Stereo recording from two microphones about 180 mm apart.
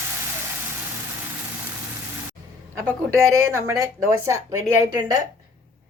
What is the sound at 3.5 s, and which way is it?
A woman's voice, 15° right (ahead or behind).